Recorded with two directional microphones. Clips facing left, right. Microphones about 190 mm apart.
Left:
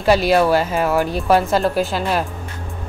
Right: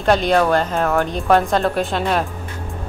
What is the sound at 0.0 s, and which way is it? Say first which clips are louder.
Speech: left 1 dB; 5° left (ahead or behind).